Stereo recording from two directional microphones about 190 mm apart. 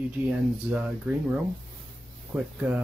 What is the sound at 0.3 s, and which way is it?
Speech, 5° right (ahead or behind).